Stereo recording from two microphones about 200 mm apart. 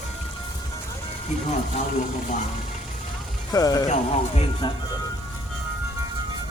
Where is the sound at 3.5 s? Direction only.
20° left (ahead or behind).